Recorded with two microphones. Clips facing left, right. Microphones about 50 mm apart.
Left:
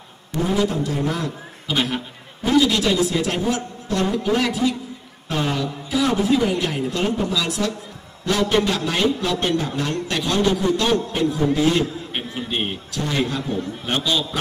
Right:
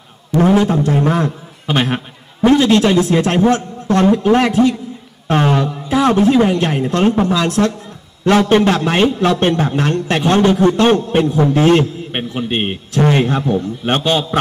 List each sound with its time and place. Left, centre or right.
0.3 s a man's voice: right
0.6 s a man's voice: right